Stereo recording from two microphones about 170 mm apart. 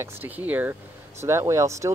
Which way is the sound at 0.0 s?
10° right (ahead or behind).